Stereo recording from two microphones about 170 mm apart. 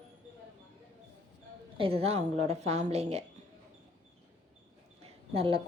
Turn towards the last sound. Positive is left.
turn(degrees=-35)  # may be behind; listen again after turning